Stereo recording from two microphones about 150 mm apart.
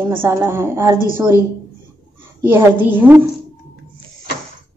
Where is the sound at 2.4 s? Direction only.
10° right (ahead or behind).